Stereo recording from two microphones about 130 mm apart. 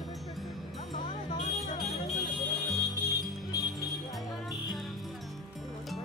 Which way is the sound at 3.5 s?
30° left (ahead or behind).